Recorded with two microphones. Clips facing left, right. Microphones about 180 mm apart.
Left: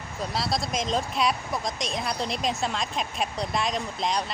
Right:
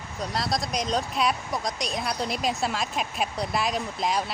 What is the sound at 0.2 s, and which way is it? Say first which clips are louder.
Speech: even; centre (ahead or behind).